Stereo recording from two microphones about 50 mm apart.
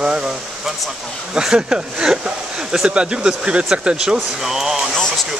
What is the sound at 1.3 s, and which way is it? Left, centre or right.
Speech, centre.